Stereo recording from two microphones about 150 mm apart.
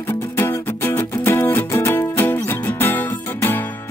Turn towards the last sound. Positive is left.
turn(degrees=15)  # may be behind; listen again after turning